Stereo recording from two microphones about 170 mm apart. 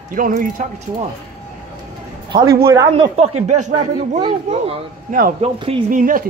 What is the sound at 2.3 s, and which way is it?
Speech, 20° right (ahead or behind).